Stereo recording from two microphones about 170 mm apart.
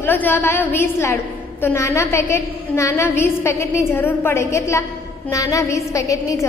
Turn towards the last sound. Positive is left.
turn(degrees=20)  # may be behind; listen again after turning